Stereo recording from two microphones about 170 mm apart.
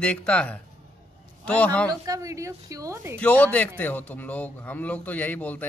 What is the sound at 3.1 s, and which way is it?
A man's voice, 10° left (ahead or behind).